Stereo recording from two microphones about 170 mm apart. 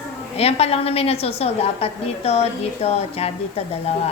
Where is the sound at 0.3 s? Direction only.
40° left (ahead or behind).